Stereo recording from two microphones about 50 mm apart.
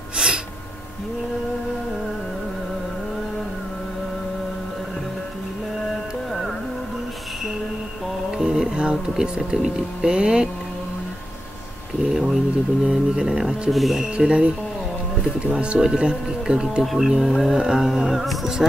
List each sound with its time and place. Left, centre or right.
8.4 s speech: centre
12.1 s speech: centre
14.1 s speech: centre
15.5 s speech: right
16.8 s speech: centre